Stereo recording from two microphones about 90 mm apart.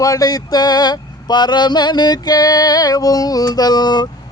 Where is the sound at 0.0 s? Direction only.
45° left (ahead or behind).